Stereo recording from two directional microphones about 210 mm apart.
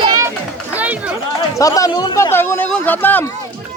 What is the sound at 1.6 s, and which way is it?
A man's voice, 15° left (ahead or behind).